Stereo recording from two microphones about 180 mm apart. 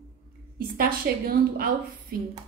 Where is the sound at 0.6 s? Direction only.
55° right (ahead or behind).